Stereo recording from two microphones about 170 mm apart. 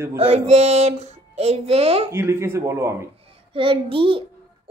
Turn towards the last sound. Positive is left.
turn(degrees=-30)  # may be behind; listen again after turning